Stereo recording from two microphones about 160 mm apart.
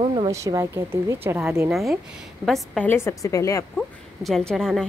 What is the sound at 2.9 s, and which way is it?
Speech, 15° left (ahead or behind).